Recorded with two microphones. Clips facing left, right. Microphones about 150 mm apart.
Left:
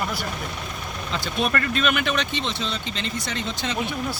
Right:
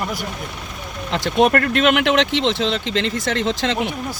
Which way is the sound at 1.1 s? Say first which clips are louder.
Right 9 dB; 80° right.